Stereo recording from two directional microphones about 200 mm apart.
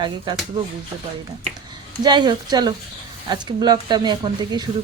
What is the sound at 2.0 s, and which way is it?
Speech, 20° right (ahead or behind).